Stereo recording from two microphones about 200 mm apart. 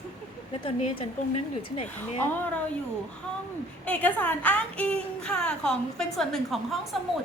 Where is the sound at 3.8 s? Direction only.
5° left (ahead or behind).